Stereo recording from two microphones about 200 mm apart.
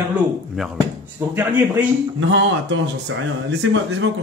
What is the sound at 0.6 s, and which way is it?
Speech, centre (ahead or behind).